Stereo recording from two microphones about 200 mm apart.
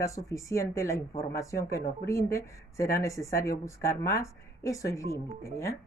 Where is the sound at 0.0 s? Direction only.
15° left (ahead or behind).